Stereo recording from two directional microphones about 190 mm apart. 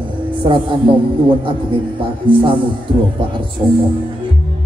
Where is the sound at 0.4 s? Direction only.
25° right (ahead or behind).